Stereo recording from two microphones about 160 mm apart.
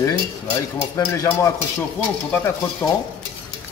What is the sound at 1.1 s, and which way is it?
Speech, 20° left (ahead or behind).